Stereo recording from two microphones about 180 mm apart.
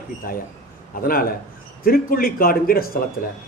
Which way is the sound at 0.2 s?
55° left (ahead or behind).